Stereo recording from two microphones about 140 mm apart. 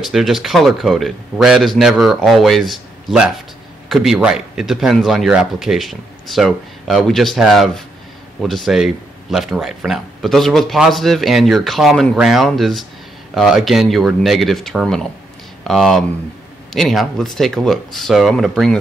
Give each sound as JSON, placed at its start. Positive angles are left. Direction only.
{"t": 0.0, "sound": "a man's voice", "side_deg": 0}